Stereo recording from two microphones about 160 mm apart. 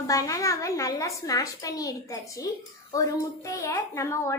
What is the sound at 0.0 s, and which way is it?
A woman's voice, 20° left (ahead or behind).